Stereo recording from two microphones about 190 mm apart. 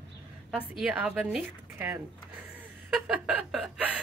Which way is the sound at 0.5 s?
5° right (ahead or behind).